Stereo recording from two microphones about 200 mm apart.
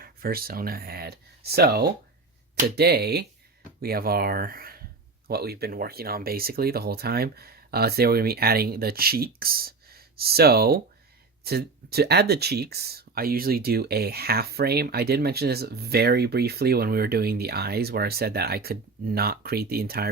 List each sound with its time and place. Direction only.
0.0 s speech: 50° right (ahead or behind)